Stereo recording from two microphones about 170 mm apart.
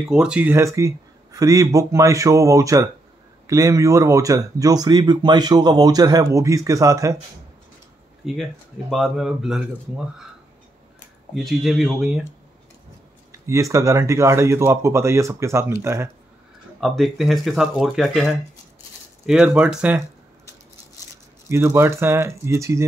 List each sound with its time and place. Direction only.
0.1 s speech: 5° right (ahead or behind)
8.2 s speech: centre (ahead or behind)
11.3 s speech: centre (ahead or behind)
13.5 s speech: 20° right (ahead or behind)
16.8 s speech: centre (ahead or behind)
19.2 s speech: 5° right (ahead or behind)
21.5 s speech: 15° right (ahead or behind)